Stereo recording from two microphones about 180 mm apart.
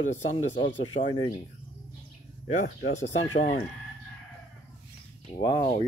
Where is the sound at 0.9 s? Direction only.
25° left (ahead or behind).